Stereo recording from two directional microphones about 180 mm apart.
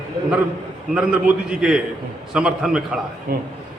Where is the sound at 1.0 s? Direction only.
5° right (ahead or behind).